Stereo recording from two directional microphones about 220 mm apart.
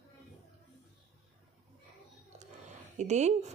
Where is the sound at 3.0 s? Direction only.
30° right (ahead or behind).